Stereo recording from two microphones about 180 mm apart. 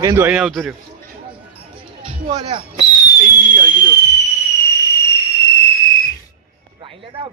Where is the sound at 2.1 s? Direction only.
30° right (ahead or behind).